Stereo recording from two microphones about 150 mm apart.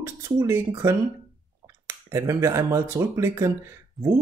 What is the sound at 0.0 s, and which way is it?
Speech, 15° right (ahead or behind).